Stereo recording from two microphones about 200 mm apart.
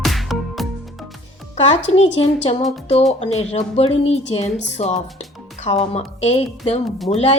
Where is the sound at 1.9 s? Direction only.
30° left (ahead or behind).